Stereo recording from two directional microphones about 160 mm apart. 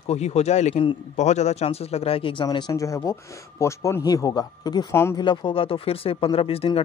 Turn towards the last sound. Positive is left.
turn(degrees=35)  # may be behind; listen again after turning